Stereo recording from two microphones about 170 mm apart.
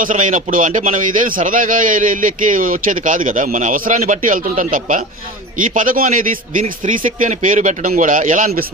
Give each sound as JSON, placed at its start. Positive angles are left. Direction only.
{"t": 0.0, "sound": "a man's voice", "side_deg": -50}